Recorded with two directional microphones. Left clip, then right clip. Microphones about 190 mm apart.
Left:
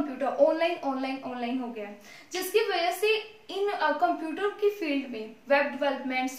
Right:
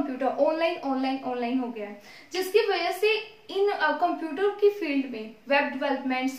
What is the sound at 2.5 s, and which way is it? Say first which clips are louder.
A woman's voice: right 2 dB; 10° right (ahead or behind).